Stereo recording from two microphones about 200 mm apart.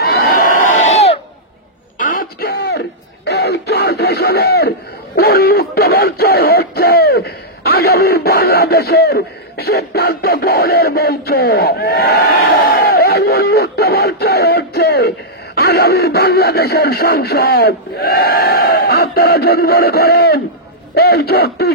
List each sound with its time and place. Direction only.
0.0 s crowd: 50° left (ahead or behind); by 1.2 s 30° left (ahead or behind)
2.0 s a sound: 45° left (ahead or behind)
3.3 s speech: 55° left (ahead or behind)